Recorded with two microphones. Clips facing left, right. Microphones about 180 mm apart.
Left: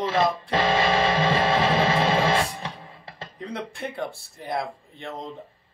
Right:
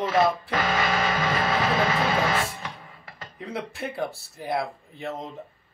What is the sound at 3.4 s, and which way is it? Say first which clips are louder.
Speech: even; 5° right (ahead or behind).